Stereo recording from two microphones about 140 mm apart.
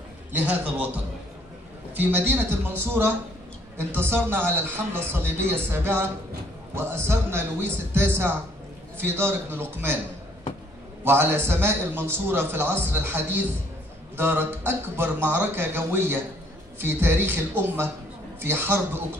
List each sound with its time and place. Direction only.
0.3 s a man's voice: 10° right (ahead or behind)
11.1 s a man's voice: 15° right (ahead or behind)